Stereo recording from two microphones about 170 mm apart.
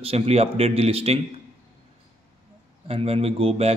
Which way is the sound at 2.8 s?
35° right (ahead or behind).